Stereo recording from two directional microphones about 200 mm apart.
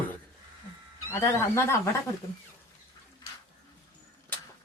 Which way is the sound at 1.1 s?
15° left (ahead or behind).